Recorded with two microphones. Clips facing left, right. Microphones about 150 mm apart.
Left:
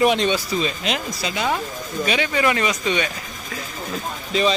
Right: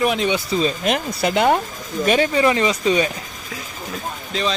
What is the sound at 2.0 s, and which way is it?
Speech, 45° right (ahead or behind).